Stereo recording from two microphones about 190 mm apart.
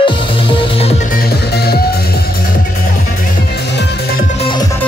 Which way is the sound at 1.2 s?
55° left (ahead or behind).